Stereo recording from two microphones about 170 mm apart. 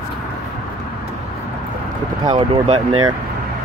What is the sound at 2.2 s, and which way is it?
Speech, 30° right (ahead or behind).